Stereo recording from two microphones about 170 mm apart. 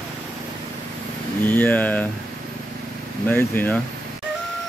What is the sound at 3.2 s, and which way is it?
Speech, 10° left (ahead or behind).